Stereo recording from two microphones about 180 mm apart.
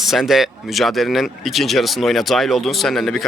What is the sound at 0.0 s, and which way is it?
Speech, centre (ahead or behind).